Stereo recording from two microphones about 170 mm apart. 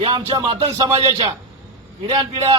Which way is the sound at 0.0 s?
35° right (ahead or behind).